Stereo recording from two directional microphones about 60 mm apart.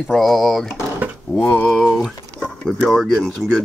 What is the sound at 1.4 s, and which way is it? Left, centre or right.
Speech, centre.